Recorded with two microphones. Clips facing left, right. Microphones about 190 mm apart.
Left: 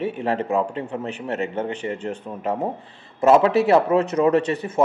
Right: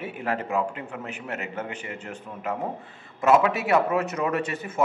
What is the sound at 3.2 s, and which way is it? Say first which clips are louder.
A man's voice: left 5 dB; 30° left (ahead or behind).